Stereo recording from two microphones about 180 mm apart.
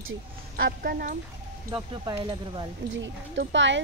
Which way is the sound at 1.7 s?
20° right (ahead or behind).